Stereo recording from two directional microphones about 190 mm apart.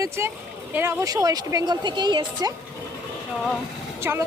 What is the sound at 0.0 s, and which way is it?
Speech, 15° right (ahead or behind).